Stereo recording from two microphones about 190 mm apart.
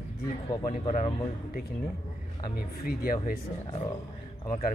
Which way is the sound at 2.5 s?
50° left (ahead or behind).